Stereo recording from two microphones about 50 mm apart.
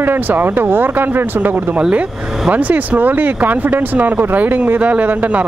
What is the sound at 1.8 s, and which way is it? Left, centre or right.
Speech, right.